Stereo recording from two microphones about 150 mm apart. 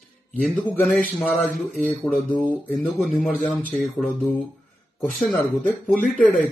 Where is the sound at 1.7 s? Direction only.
10° left (ahead or behind).